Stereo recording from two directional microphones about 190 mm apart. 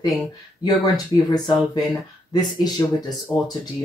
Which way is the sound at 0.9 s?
20° left (ahead or behind).